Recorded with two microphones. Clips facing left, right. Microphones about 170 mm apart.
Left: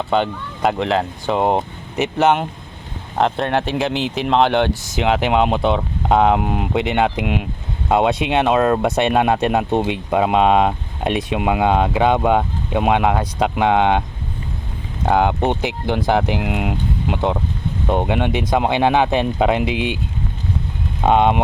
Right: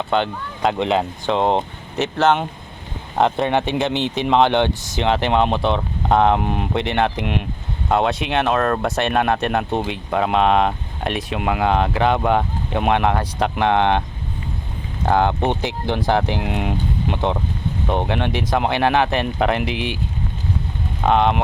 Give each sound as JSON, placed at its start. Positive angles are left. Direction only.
{"t": 0.1, "sound": "speech", "side_deg": 5}
{"t": 15.0, "sound": "speech", "side_deg": 5}
{"t": 21.0, "sound": "speech", "side_deg": 20}